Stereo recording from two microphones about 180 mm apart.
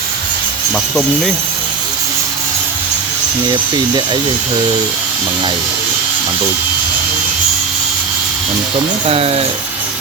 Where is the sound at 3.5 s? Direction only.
25° right (ahead or behind).